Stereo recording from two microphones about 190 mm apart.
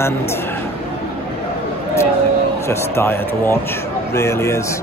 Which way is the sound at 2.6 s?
15° left (ahead or behind).